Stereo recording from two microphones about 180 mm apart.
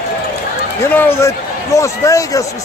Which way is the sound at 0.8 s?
10° left (ahead or behind).